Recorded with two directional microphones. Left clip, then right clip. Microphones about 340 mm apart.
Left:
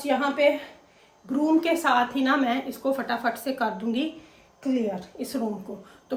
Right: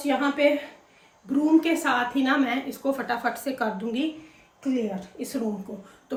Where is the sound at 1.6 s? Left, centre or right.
Centre.